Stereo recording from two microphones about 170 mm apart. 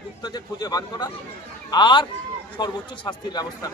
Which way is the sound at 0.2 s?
25° left (ahead or behind).